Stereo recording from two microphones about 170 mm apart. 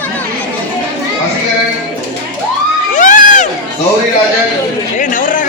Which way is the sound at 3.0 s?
50° left (ahead or behind).